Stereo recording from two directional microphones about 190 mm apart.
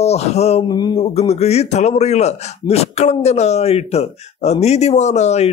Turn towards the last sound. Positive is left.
turn(degrees=35)  # may be behind; listen again after turning